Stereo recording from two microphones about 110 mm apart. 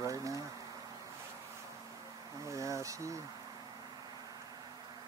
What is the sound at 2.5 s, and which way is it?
Speech, 30° right (ahead or behind).